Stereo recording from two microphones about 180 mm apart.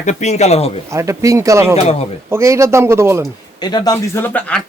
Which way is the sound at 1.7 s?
35° left (ahead or behind).